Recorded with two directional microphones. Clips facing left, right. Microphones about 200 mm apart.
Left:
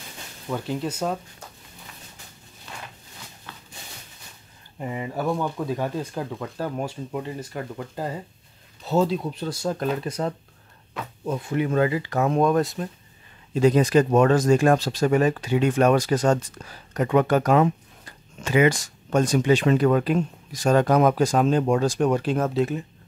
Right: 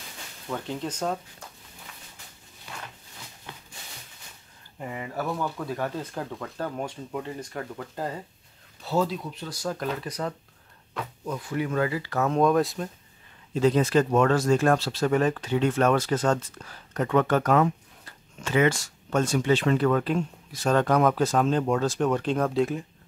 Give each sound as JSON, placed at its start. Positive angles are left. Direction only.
{"t": 0.5, "sound": "speech", "side_deg": 10}
{"t": 3.5, "sound": "a sound", "side_deg": -15}
{"t": 4.7, "sound": "speech", "side_deg": 20}
{"t": 8.8, "sound": "speech", "side_deg": 25}
{"t": 12.4, "sound": "speech", "side_deg": 0}
{"t": 13.5, "sound": "speech", "side_deg": 15}